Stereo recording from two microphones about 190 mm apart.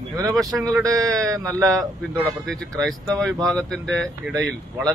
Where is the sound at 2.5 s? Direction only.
5° left (ahead or behind).